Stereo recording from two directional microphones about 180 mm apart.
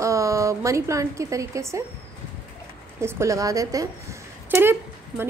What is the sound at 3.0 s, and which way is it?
Speech, 15° right (ahead or behind).